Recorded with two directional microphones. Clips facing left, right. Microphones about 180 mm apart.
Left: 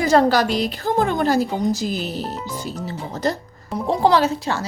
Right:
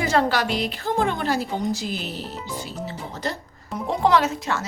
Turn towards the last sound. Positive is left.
turn(degrees=30)  # may be behind; listen again after turning